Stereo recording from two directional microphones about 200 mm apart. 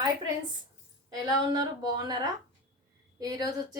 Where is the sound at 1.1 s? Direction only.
20° right (ahead or behind).